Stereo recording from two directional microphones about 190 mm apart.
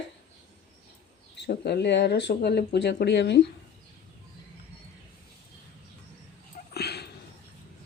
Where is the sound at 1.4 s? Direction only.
60° left (ahead or behind).